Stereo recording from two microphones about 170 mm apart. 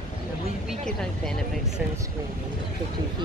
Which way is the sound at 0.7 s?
5° left (ahead or behind).